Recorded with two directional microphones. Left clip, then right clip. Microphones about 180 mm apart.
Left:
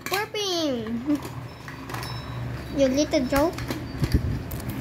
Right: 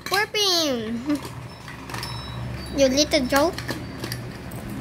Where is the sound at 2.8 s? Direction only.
5° right (ahead or behind).